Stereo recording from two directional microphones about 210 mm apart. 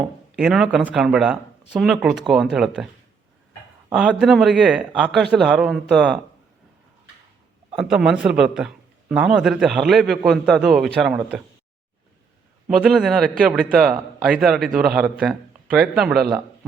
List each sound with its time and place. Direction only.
0.3 s a man's voice: centre (ahead or behind)
3.9 s a man's voice: 5° right (ahead or behind)
7.8 s a man's voice: 5° right (ahead or behind)
12.6 s a man's voice: 5° right (ahead or behind)